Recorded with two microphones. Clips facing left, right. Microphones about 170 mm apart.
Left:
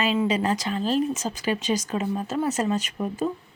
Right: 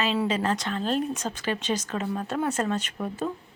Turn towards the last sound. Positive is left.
turn(degrees=10)  # may be behind; listen again after turning